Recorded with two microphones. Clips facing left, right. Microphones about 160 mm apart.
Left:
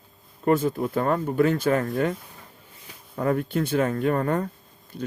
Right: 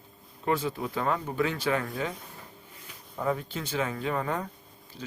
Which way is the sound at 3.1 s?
60° left (ahead or behind).